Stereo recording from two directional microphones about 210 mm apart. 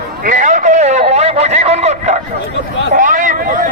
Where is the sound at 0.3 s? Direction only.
35° right (ahead or behind).